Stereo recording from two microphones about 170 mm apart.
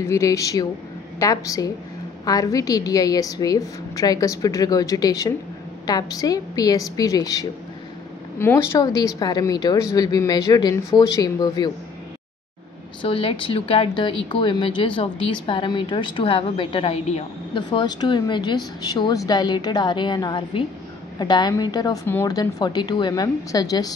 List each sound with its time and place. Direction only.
0.0 s a woman's voice: 15° left (ahead or behind)
13.0 s speech: 30° left (ahead or behind)
17.6 s a woman's voice: 25° left (ahead or behind)